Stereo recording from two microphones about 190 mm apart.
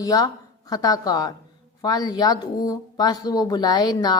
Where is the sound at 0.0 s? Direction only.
20° left (ahead or behind).